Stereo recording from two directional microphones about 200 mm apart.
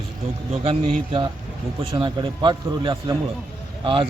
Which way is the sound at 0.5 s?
30° right (ahead or behind).